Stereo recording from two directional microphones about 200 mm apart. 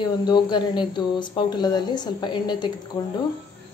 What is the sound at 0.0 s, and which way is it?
Speech, 20° left (ahead or behind).